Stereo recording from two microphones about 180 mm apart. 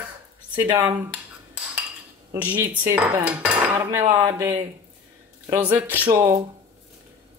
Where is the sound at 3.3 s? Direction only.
10° right (ahead or behind).